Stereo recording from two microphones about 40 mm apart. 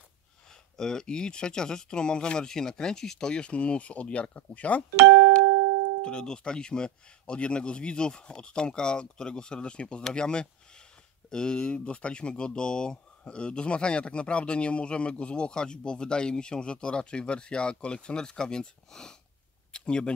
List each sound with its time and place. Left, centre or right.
0.7 s speech: centre; by 4.8 s left
6.0 s speech: left
11.7 s speech: left; by 19.1 s centre
19.7 s a sound: left